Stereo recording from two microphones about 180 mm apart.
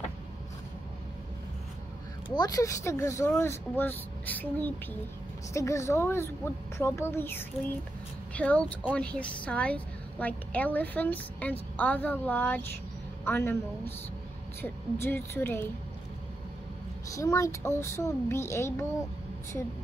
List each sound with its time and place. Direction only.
2.2 s a woman's voice: 25° left (ahead or behind)
17.1 s a woman's voice: 15° left (ahead or behind)